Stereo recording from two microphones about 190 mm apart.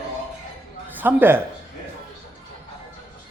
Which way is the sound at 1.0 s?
10° right (ahead or behind).